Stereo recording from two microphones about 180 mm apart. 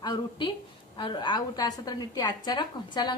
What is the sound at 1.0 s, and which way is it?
A woman's voice, 25° left (ahead or behind).